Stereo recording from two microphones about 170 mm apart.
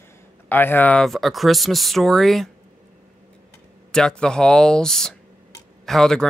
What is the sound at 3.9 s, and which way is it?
Speech, 5° left (ahead or behind).